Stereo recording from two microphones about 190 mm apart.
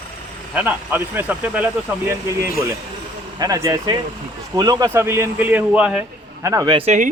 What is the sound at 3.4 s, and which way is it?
Speech, 15° right (ahead or behind).